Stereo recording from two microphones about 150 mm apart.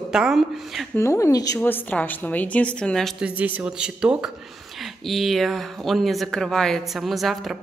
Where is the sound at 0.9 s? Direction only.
20° left (ahead or behind).